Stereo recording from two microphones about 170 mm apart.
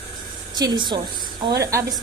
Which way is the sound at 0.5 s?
25° right (ahead or behind).